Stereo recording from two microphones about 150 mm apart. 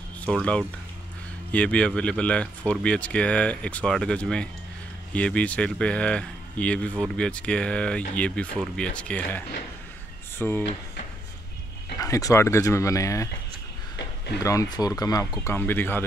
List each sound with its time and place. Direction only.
0.2 s speech: 5° left (ahead or behind)
10.4 s speech: 5° left (ahead or behind)
12.0 s speech: 25° left (ahead or behind)
14.4 s speech: 20° left (ahead or behind)
15.4 s speech: 15° left (ahead or behind)